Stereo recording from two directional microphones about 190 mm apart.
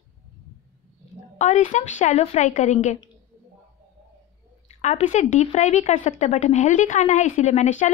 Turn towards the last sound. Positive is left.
turn(degrees=40)  # may be behind; listen again after turning